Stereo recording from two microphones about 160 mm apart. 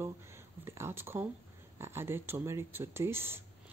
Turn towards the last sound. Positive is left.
turn(degrees=-15)  # may be behind; listen again after turning